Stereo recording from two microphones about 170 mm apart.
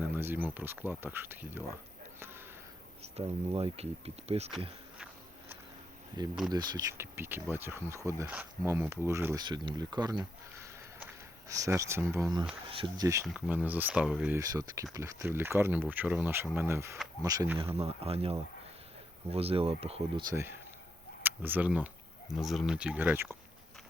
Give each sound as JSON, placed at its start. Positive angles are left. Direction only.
{"t": 0.0, "sound": "speech", "side_deg": -10}
{"t": 3.0, "sound": "speech", "side_deg": -35}
{"t": 6.2, "sound": "speech", "side_deg": -25}
{"t": 13.2, "sound": "speech", "side_deg": -5}
{"t": 14.3, "sound": "speech", "side_deg": -20}
{"t": 17.7, "sound": "speech", "side_deg": -35}
{"t": 21.2, "sound": "speech", "side_deg": -10}